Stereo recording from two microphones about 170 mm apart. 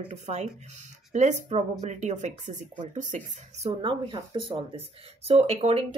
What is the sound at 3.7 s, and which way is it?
Speech, 30° right (ahead or behind).